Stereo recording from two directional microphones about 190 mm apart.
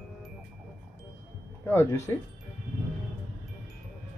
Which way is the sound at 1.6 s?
10° left (ahead or behind).